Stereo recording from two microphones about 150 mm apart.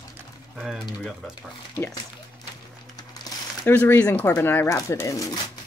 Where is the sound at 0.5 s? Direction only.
Centre (ahead or behind).